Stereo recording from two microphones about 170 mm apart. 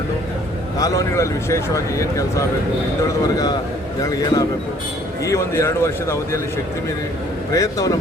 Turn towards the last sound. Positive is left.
turn(degrees=20)  # may be behind; listen again after turning